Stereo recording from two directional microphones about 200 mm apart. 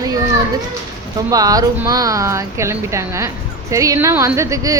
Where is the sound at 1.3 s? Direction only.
20° right (ahead or behind).